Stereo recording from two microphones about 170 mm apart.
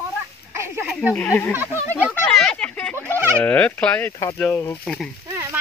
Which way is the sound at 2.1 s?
5° left (ahead or behind).